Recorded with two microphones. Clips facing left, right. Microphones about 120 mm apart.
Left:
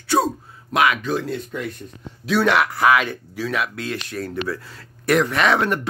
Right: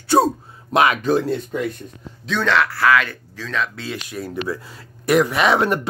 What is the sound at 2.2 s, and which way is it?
Speech, 10° left (ahead or behind).